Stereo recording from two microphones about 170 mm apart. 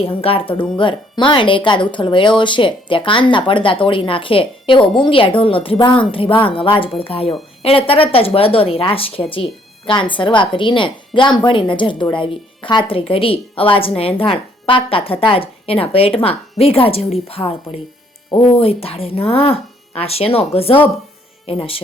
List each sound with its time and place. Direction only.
0.0 s a woman's voice: 35° left (ahead or behind)